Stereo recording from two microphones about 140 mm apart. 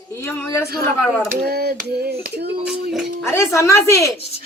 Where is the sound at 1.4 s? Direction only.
90° right.